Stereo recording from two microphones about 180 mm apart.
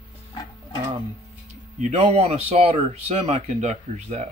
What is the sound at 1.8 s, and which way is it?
Speech, 40° right (ahead or behind).